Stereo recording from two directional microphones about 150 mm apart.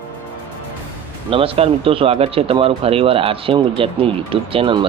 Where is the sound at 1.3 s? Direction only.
40° right (ahead or behind).